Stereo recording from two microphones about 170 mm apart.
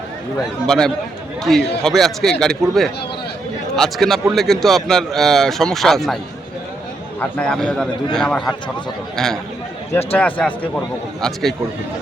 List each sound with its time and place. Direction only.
0.7 s a man's voice: centre (ahead or behind)
7.2 s a man's voice: 5° left (ahead or behind)